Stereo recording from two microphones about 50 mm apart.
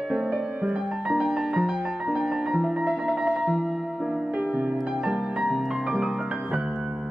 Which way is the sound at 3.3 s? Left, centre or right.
Right.